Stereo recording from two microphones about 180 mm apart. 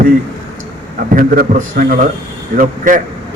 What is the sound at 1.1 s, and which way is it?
A man's voice, 50° right (ahead or behind).